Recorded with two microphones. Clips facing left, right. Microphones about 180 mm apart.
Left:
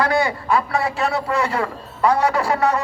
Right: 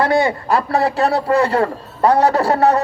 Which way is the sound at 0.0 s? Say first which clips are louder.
Right 4 dB; 25° right (ahead or behind).